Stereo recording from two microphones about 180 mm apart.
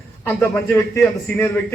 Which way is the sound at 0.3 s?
15° left (ahead or behind).